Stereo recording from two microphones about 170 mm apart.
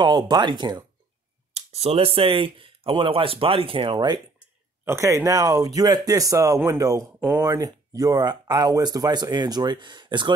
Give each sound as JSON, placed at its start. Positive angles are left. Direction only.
{"t": 0.0, "sound": "speech", "side_deg": -25}
{"t": 7.4, "sound": "speech", "side_deg": -20}